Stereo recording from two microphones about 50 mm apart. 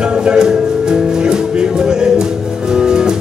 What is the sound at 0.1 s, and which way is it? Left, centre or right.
Music, centre.